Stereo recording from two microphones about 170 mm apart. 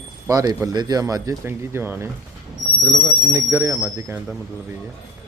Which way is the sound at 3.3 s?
15° right (ahead or behind).